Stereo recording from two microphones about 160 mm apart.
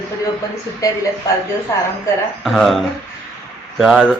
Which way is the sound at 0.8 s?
20° left (ahead or behind).